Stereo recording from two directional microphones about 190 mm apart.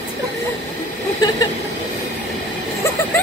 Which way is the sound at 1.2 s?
20° left (ahead or behind).